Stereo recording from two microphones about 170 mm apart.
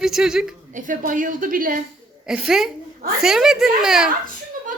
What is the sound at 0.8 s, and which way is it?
A woman's voice, 50° right (ahead or behind).